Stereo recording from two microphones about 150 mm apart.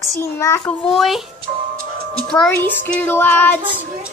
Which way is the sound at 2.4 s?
15° left (ahead or behind).